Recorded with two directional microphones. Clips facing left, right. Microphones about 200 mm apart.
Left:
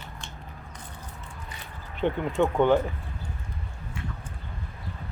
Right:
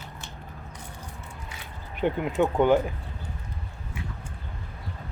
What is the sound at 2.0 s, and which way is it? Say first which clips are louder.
Speech: even; 10° right (ahead or behind).